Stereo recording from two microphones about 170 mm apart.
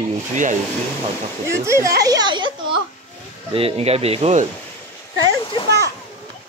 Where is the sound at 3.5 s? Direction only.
35° right (ahead or behind).